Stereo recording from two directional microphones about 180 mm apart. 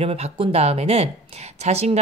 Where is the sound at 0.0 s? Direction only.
35° right (ahead or behind).